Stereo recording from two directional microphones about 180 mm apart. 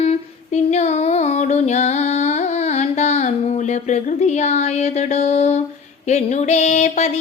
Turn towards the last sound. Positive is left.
turn(degrees=40)  # may be behind; listen again after turning